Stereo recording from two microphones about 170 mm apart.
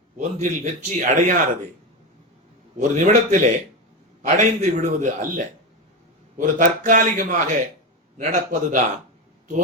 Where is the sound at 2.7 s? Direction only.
50° right (ahead or behind).